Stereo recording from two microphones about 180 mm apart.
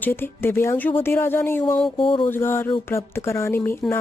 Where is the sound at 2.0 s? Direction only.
30° left (ahead or behind).